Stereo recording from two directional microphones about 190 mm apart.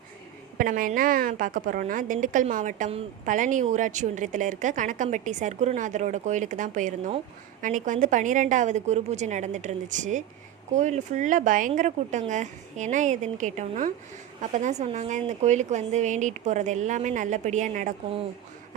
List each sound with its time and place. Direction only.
0.6 s a woman's voice: 45° right (ahead or behind)